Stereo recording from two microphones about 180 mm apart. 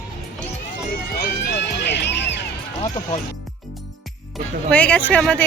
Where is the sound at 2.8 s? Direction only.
35° left (ahead or behind).